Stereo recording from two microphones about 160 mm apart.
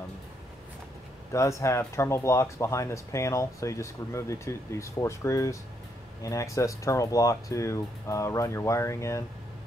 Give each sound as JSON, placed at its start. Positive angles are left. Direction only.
{"t": 1.3, "sound": "speech", "side_deg": 20}